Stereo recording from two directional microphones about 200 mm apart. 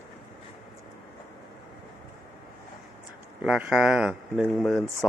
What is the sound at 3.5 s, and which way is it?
Speech, 5° right (ahead or behind).